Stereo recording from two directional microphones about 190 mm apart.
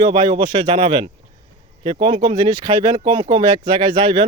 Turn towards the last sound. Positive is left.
turn(degrees=-25)  # may be behind; listen again after turning